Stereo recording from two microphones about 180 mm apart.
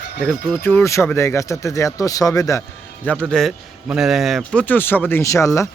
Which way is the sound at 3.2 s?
Centre (ahead or behind).